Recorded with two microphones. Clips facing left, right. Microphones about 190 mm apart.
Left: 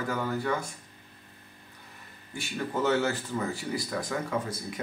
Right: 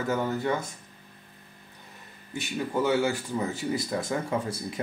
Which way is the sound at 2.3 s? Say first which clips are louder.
Right 3 dB; 15° right (ahead or behind).